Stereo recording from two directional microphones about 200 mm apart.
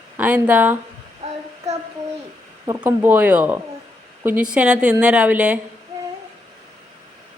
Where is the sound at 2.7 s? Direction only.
10° right (ahead or behind).